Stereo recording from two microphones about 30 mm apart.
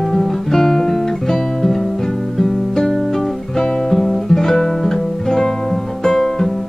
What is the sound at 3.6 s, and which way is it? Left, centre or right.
Music, left.